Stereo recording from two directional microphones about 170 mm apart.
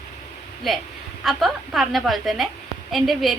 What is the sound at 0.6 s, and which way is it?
A woman's voice, centre (ahead or behind).